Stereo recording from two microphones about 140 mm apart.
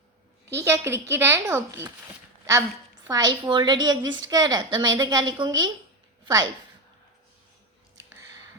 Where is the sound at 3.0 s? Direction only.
30° right (ahead or behind).